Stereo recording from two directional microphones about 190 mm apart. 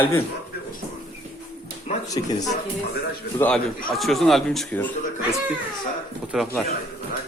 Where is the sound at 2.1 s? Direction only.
20° left (ahead or behind).